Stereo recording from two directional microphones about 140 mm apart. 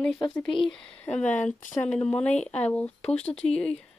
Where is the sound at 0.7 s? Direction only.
10° left (ahead or behind).